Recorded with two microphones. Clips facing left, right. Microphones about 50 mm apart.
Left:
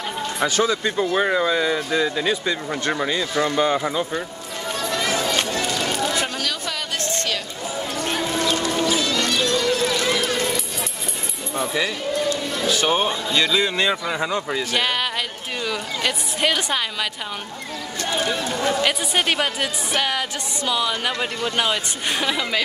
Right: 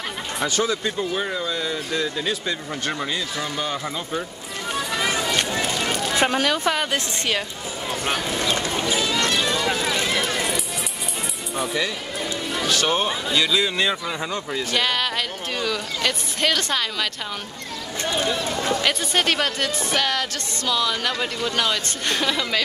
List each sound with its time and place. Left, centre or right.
0.4 s speech: centre
0.8 s speech: centre
4.7 s music: centre
5.5 s run: centre
6.1 s a sound: right
8.0 s music: centre
10.1 s a sound: centre
11.5 s speech: centre
13.1 s speech: centre
18.1 s speech: centre